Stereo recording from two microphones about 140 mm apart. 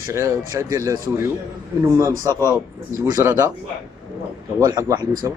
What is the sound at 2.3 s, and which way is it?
Speech, 20° right (ahead or behind).